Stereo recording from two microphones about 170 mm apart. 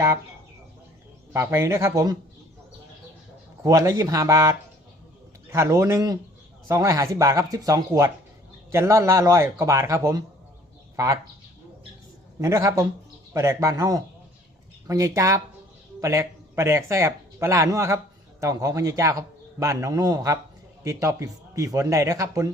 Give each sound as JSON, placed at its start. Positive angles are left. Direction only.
{"t": 1.3, "sound": "a man's voice", "side_deg": -20}
{"t": 3.6, "sound": "a man's voice", "side_deg": -20}
{"t": 12.4, "sound": "a man's voice", "side_deg": -20}